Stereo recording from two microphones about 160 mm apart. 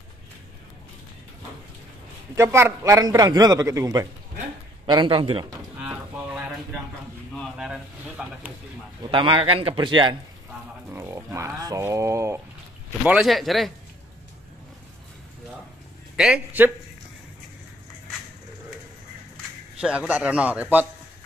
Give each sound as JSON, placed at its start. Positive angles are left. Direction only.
{"t": 2.3, "sound": "a man's voice", "side_deg": -15}
{"t": 5.8, "sound": "a sound", "side_deg": -10}
{"t": 7.5, "sound": "a sound", "side_deg": -5}
{"t": 9.1, "sound": "a man's voice", "side_deg": -30}
{"t": 10.9, "sound": "speech", "side_deg": -15}
{"t": 13.0, "sound": "speech", "side_deg": -5}
{"t": 16.2, "sound": "speech", "side_deg": -10}
{"t": 19.8, "sound": "speech", "side_deg": -5}